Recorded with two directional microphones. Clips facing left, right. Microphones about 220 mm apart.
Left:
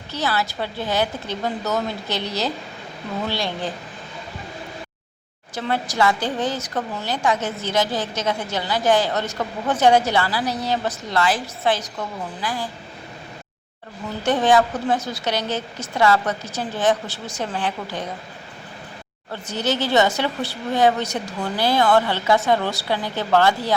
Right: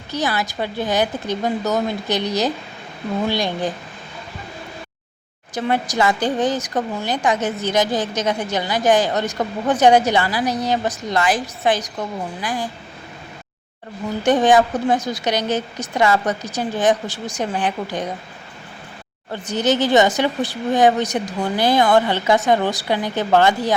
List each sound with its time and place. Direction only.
0.1 s a woman's voice: 15° right (ahead or behind)
5.5 s a woman's voice: 15° right (ahead or behind)
14.3 s a woman's voice: 15° right (ahead or behind)
19.3 s a woman's voice: 15° right (ahead or behind)